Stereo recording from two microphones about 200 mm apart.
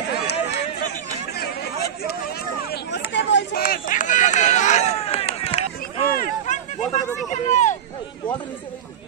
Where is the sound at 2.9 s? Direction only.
60° left (ahead or behind); by 5.2 s 30° left (ahead or behind).